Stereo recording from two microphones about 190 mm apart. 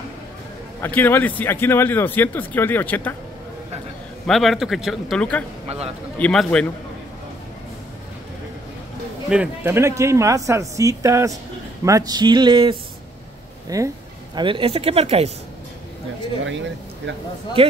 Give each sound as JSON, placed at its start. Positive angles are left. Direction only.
{"t": 0.8, "sound": "a man's voice", "side_deg": 10}
{"t": 4.3, "sound": "a man's voice", "side_deg": 0}
{"t": 5.7, "sound": "speech", "side_deg": -30}
{"t": 6.1, "sound": "a man's voice", "side_deg": 5}
{"t": 9.3, "sound": "speech", "side_deg": -10}
{"t": 16.4, "sound": "speech", "side_deg": -70}
{"t": 17.6, "sound": "speech", "side_deg": -30}